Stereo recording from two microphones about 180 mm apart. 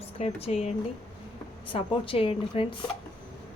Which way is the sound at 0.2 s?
35° left (ahead or behind).